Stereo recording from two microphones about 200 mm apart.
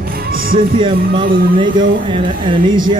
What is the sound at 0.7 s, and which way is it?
Speech, 25° right (ahead or behind).